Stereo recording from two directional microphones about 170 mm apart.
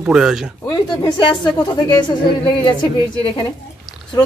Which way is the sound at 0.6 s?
25° left (ahead or behind).